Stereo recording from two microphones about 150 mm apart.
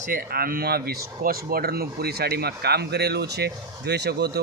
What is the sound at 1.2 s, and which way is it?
Speech, 75° right (ahead or behind).